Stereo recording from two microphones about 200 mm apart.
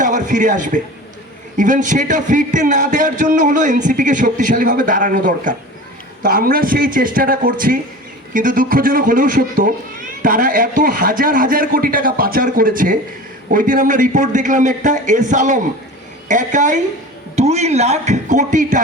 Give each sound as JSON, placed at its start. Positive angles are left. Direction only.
{"t": 0.0, "sound": "a man's voice", "side_deg": -40}